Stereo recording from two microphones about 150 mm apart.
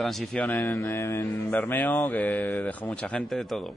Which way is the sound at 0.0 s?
5° left (ahead or behind).